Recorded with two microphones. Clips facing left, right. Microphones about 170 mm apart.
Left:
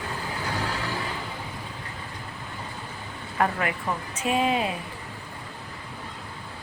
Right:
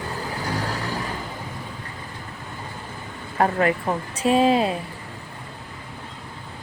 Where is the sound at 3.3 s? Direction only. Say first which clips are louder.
Right 6 dB; 35° right (ahead or behind).